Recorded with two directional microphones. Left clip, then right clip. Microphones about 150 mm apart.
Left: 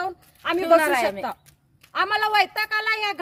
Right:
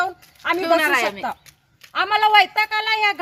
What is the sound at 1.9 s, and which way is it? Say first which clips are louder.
A woman's voice: right 5 dB; 30° left (ahead or behind).